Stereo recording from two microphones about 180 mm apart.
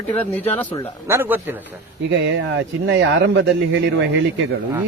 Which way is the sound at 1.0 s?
10° right (ahead or behind).